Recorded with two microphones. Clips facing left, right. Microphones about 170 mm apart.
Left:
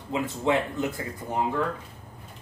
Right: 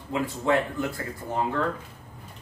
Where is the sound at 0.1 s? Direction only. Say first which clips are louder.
Right 1 dB; 20° left (ahead or behind).